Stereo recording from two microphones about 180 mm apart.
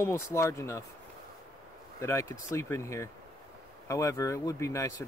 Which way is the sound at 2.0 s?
15° left (ahead or behind).